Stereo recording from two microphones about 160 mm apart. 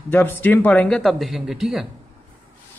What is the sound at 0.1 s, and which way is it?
Speech, 10° left (ahead or behind).